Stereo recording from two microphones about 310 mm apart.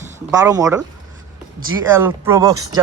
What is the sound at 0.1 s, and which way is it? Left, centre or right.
Speech, centre.